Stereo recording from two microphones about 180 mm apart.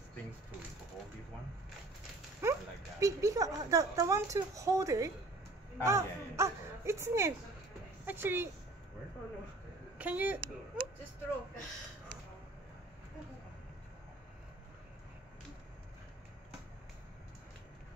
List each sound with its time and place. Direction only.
2.4 s a sound: 15° right (ahead or behind)
3.0 s speech: 20° right (ahead or behind)
9.9 s speech: 10° right (ahead or behind)